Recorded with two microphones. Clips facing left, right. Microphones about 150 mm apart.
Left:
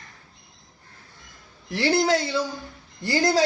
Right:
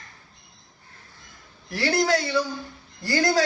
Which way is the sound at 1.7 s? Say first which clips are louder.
Left 1 dB; 20° left (ahead or behind).